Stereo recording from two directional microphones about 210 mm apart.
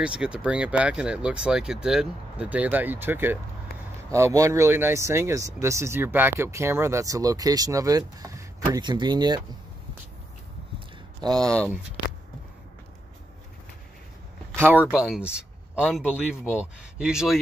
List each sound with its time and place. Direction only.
0.0 s speech: 5° right (ahead or behind)
11.3 s speech: 5° left (ahead or behind)
14.5 s a sound: 10° right (ahead or behind)
14.9 s speech: 5° right (ahead or behind)